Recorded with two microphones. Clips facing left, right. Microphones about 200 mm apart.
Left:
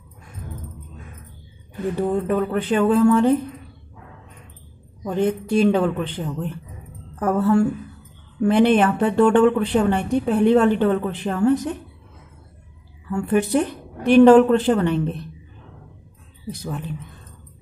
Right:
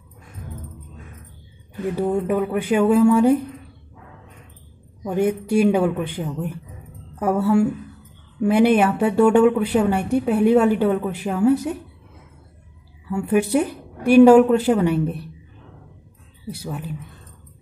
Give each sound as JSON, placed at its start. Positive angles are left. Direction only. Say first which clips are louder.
{"t": 2.0, "sound": "a woman's voice", "louder": "even", "side_deg": -10}
{"t": 5.0, "sound": "a woman's voice", "louder": "right 1 dB", "side_deg": -10}
{"t": 13.1, "sound": "a woman's voice", "louder": "right 1 dB", "side_deg": -10}
{"t": 16.4, "sound": "a woman's voice", "louder": "left 1 dB", "side_deg": -10}